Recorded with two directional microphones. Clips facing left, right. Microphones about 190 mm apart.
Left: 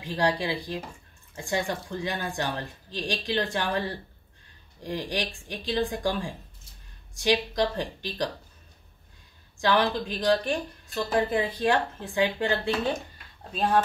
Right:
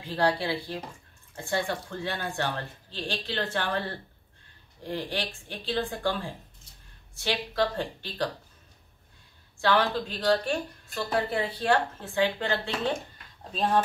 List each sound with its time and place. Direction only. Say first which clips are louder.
0.0 s speech: even; 15° left (ahead or behind)
4.8 s speech: left 1 dB; 15° left (ahead or behind)
9.6 s speech: left 1 dB; 15° left (ahead or behind)